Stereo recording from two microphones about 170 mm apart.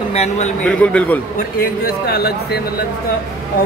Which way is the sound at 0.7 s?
5° left (ahead or behind).